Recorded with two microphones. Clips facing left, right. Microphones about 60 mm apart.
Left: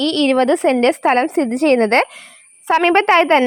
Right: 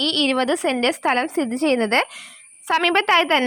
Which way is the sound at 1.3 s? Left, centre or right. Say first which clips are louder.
Left 6 dB; left.